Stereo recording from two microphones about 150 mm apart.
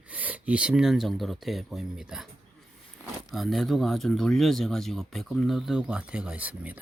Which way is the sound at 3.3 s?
Centre (ahead or behind).